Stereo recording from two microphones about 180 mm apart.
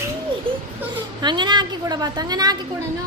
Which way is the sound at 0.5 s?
30° right (ahead or behind).